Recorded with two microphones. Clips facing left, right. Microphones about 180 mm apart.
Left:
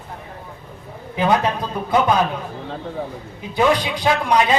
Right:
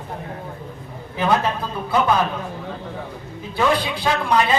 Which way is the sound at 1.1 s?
15° left (ahead or behind).